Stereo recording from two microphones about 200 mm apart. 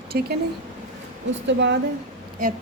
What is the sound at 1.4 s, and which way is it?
Speech, 60° right (ahead or behind).